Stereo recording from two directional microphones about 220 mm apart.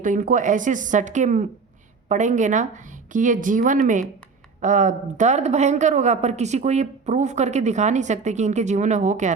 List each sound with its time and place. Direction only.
0.0 s a woman's voice: 35° right (ahead or behind)